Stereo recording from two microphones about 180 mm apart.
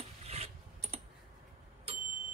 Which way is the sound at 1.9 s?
35° right (ahead or behind).